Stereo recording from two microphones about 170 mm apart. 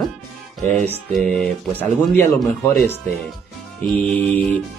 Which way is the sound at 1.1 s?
5° left (ahead or behind).